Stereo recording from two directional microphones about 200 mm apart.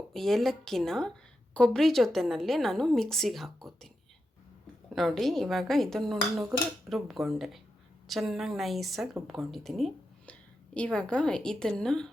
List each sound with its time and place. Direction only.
0.1 s a woman's voice: centre (ahead or behind)
4.9 s a woman's voice: centre (ahead or behind)